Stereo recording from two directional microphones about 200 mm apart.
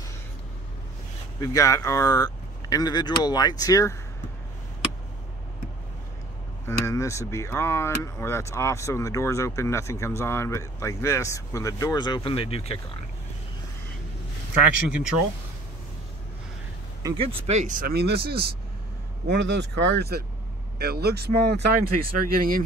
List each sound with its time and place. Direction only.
1.4 s speech: 15° left (ahead or behind)
6.6 s speech: 15° left (ahead or behind)
14.9 s speech: 5° right (ahead or behind)
17.2 s speech: 30° right (ahead or behind); by 22.6 s 45° right (ahead or behind)